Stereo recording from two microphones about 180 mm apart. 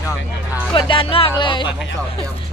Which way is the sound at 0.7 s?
30° left (ahead or behind).